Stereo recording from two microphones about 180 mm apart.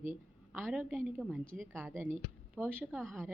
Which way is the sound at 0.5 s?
5° right (ahead or behind).